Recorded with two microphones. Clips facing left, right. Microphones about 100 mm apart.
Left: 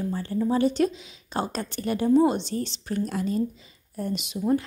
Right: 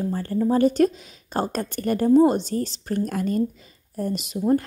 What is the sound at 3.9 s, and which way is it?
Speech, 40° right (ahead or behind).